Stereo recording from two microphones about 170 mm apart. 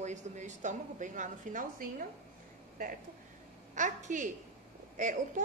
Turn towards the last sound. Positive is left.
turn(degrees=-45)  # may be behind; listen again after turning